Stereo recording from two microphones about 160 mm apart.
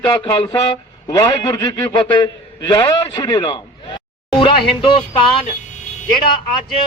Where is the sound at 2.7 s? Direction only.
25° left (ahead or behind).